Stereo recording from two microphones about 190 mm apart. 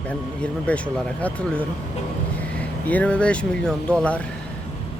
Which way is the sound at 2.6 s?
5° left (ahead or behind).